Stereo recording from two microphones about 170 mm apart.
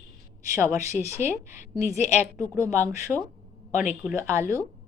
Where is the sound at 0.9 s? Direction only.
45° left (ahead or behind).